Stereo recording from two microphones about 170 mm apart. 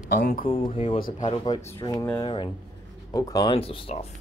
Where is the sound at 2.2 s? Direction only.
30° left (ahead or behind).